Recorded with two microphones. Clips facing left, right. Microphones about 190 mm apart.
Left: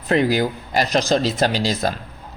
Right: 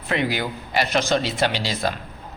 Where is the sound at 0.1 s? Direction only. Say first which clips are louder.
Left 6 dB; 40° left (ahead or behind).